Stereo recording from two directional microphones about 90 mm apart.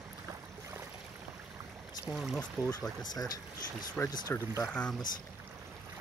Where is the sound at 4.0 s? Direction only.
10° left (ahead or behind).